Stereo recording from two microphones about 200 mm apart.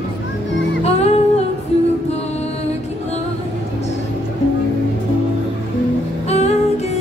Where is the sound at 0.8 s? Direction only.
30° left (ahead or behind).